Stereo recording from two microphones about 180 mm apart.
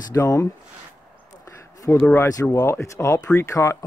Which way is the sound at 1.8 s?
15° left (ahead or behind).